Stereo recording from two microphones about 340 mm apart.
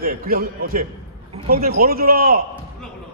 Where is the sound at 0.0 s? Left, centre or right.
Right.